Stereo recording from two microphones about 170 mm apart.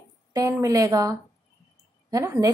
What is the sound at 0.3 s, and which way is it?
A woman's voice, 20° right (ahead or behind).